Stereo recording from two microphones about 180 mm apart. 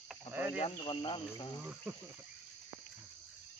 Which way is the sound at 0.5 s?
30° left (ahead or behind).